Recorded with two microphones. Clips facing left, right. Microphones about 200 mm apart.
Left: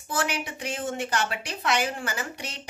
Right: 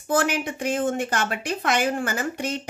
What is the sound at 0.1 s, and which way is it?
A woman's voice, 50° right (ahead or behind).